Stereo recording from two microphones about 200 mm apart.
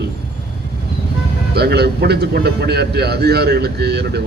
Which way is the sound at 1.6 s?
55° right (ahead or behind).